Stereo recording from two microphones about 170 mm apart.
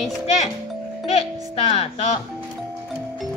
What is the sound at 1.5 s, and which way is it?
Speech, 40° left (ahead or behind).